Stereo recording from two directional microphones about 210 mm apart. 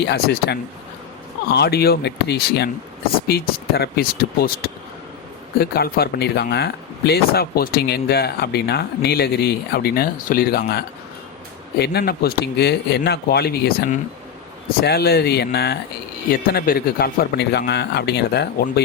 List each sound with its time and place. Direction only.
0.0 s speech: 50° left (ahead or behind)